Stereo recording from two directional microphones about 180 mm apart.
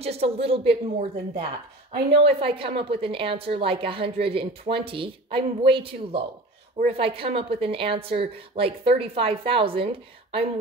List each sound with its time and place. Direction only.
0.0 s a woman's voice: 35° right (ahead or behind)